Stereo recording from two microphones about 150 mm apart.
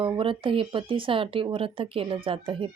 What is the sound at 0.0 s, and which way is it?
Speech, 35° right (ahead or behind).